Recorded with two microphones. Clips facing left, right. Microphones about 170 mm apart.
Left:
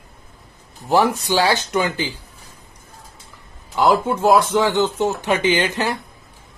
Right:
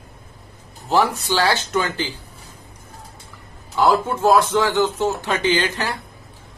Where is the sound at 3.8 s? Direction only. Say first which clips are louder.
Left 1 dB; 15° left (ahead or behind).